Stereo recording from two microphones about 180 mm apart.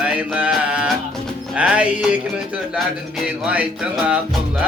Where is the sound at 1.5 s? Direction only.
5° right (ahead or behind).